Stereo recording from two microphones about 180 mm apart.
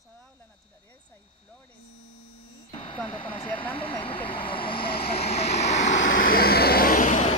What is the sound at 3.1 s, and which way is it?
Vehicle, 30° left (ahead or behind).